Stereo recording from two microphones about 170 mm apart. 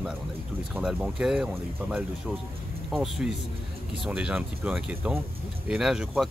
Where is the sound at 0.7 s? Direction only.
5° right (ahead or behind).